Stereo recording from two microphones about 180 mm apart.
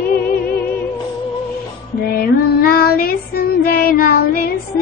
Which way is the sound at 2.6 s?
55° left (ahead or behind).